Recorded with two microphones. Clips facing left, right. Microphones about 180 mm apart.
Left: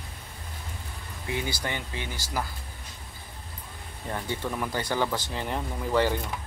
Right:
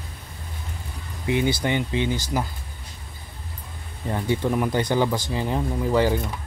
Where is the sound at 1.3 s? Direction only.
20° right (ahead or behind).